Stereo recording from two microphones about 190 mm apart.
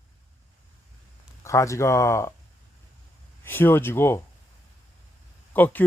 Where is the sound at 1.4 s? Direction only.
15° left (ahead or behind).